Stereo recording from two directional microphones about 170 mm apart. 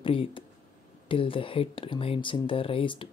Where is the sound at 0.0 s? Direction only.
30° left (ahead or behind).